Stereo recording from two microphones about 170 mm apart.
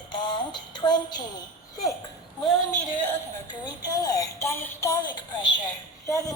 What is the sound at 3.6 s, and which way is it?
A woman's voice, 20° left (ahead or behind).